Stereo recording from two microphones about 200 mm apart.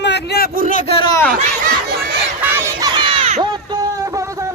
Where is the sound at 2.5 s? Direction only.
15° right (ahead or behind).